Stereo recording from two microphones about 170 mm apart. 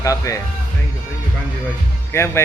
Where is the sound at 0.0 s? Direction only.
20° left (ahead or behind).